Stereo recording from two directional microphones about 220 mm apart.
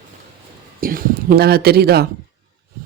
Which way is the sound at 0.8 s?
40° right (ahead or behind).